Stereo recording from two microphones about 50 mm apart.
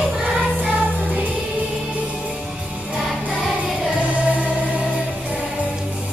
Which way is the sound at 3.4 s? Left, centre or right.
Right.